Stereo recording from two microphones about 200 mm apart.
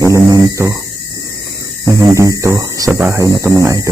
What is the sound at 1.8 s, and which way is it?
Speech, 15° right (ahead or behind).